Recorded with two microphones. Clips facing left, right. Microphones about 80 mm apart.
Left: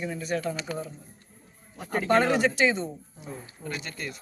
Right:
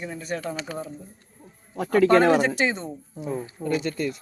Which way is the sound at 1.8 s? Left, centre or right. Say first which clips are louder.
Right 6 dB; right.